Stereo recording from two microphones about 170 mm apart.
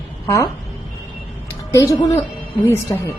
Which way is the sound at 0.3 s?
20° left (ahead or behind).